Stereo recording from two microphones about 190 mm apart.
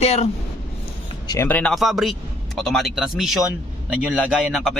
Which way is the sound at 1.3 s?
10° left (ahead or behind).